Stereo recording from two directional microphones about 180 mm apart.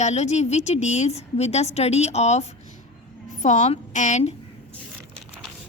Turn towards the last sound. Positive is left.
turn(degrees=40)  # may be behind; listen again after turning